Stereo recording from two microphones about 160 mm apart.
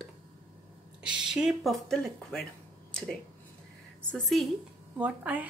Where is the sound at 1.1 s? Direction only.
5° right (ahead or behind).